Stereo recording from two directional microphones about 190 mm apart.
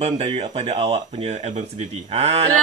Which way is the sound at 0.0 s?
30° right (ahead or behind).